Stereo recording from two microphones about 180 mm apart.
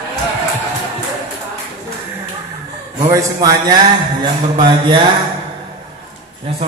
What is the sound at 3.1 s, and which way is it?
A man's voice, 20° right (ahead or behind).